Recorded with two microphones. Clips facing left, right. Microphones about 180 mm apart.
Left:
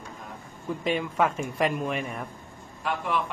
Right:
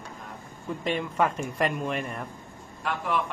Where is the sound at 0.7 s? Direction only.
Centre (ahead or behind).